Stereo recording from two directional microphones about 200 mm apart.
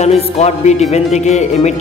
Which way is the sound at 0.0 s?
35° left (ahead or behind).